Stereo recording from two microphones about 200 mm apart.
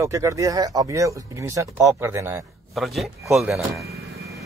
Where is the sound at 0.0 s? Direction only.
15° right (ahead or behind).